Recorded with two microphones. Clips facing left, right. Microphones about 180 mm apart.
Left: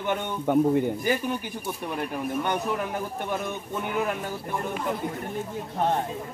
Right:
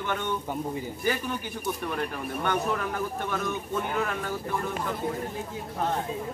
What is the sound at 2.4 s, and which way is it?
A man's voice, 15° left (ahead or behind).